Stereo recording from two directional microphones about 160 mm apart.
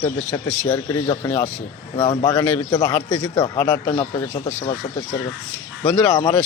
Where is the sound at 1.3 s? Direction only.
10° left (ahead or behind).